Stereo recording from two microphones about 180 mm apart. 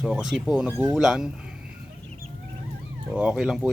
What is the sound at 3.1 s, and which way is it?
Speech, 5° right (ahead or behind).